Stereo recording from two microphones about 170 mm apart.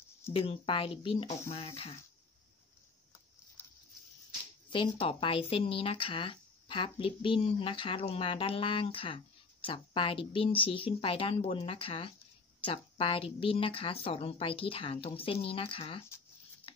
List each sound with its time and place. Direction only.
0.3 s speech: 30° left (ahead or behind)
4.6 s speech: 30° left (ahead or behind)